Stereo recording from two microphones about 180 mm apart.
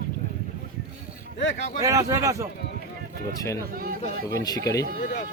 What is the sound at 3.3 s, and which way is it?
Speech, 20° left (ahead or behind).